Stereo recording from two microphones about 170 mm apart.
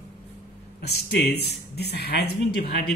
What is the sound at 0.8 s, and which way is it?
Speech, 70° left (ahead or behind).